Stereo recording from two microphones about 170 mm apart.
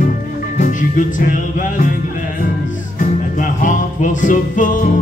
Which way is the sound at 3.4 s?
50° left (ahead or behind).